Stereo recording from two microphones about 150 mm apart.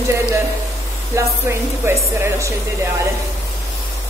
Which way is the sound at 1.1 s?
20° right (ahead or behind).